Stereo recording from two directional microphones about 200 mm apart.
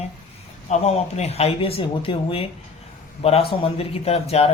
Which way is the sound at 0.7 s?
35° left (ahead or behind).